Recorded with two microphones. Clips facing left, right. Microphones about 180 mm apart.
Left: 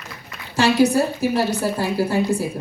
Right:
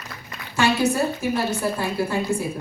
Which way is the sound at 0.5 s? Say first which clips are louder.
Left 4 dB; 35° left (ahead or behind).